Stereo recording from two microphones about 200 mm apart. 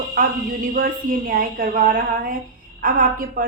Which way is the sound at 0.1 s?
45° right (ahead or behind).